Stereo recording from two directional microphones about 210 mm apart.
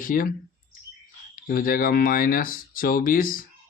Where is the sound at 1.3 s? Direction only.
40° left (ahead or behind).